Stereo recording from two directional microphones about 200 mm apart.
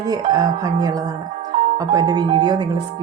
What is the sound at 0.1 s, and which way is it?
Speech, 20° right (ahead or behind).